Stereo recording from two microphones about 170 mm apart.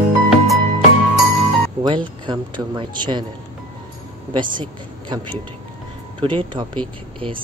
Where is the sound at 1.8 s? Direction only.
25° right (ahead or behind).